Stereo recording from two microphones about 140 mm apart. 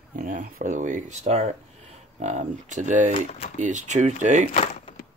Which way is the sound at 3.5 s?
60° right (ahead or behind).